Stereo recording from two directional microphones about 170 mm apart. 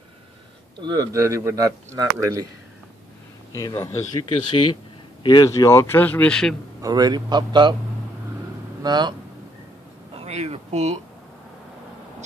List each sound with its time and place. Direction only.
0.7 s speech: 25° right (ahead or behind)
3.5 s speech: 20° left (ahead or behind)
6.8 s speech: 20° right (ahead or behind)
8.8 s speech: 25° right (ahead or behind)
10.1 s a sound: 40° right (ahead or behind)